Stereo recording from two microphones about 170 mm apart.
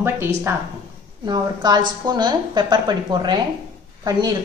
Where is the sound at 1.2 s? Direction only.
25° right (ahead or behind).